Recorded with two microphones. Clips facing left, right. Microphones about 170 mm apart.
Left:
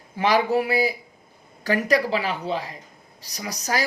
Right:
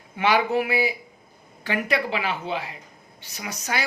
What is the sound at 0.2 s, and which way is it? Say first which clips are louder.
A woman's voice: left 1 dB; 35° left (ahead or behind).